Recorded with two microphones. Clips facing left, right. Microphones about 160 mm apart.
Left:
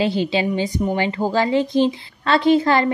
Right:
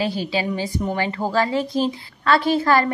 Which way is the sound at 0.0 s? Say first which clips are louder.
Left 4 dB; 25° left (ahead or behind).